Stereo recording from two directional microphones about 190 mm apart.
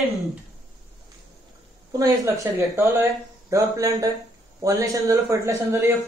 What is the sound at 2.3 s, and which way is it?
A woman's voice, 15° right (ahead or behind).